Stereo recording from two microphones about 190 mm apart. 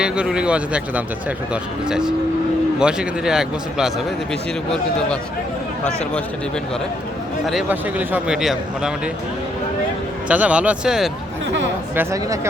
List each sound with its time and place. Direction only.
0.0 s a man's voice: 5° right (ahead or behind)
7.4 s a man's voice: 5° right (ahead or behind)
10.2 s speech: 5° right (ahead or behind)
11.9 s speech: 15° right (ahead or behind)